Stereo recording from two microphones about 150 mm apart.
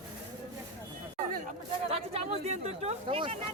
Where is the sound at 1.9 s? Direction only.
45° right (ahead or behind).